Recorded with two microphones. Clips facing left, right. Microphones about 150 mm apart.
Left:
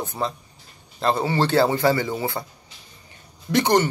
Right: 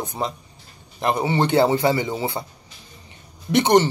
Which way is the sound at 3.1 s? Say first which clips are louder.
Right 1 dB; 20° right (ahead or behind).